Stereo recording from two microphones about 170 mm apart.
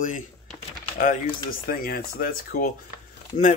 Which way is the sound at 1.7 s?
60° left (ahead or behind).